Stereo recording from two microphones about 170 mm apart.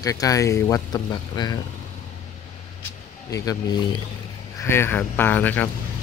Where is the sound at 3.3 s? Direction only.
20° left (ahead or behind).